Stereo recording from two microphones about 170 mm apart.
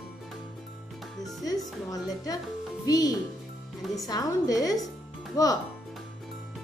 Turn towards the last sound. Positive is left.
turn(degrees=20)  # may be behind; listen again after turning